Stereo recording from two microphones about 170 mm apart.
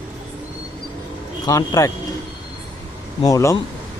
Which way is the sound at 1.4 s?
20° left (ahead or behind).